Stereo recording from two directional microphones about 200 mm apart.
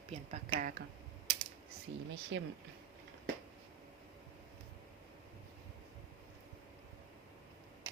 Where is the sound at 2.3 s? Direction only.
70° right (ahead or behind).